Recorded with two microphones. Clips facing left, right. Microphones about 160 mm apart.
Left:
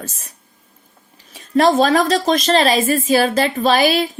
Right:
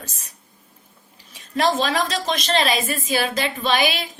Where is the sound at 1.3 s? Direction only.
45° left (ahead or behind).